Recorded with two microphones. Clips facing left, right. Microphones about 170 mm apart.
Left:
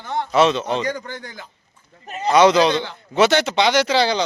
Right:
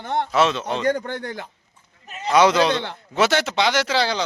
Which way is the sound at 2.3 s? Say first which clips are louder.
Left 3 dB; 5° right (ahead or behind).